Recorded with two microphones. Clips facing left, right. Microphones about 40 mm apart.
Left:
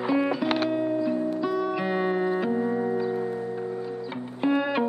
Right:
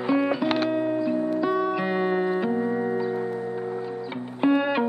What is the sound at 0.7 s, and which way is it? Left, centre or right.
Music, centre.